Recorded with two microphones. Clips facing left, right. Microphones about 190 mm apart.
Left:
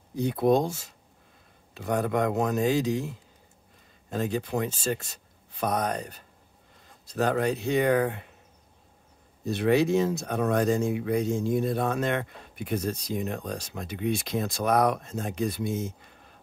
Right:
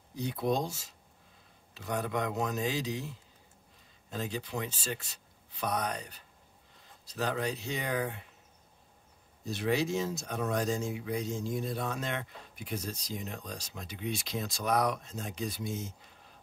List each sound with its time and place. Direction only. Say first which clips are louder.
0.1 s speech: left 8 dB; 50° left (ahead or behind)
9.4 s speech: left 8 dB; 60° left (ahead or behind)